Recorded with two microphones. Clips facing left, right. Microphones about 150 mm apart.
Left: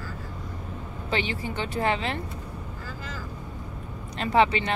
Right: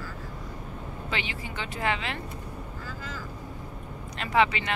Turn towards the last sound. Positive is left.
turn(degrees=30)  # may be behind; listen again after turning